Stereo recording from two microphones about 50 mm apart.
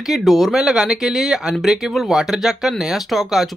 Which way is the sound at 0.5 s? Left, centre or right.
Centre.